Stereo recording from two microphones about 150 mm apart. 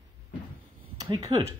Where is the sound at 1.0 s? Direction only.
25° right (ahead or behind).